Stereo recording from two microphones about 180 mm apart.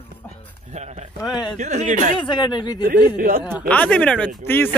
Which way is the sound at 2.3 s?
25° left (ahead or behind).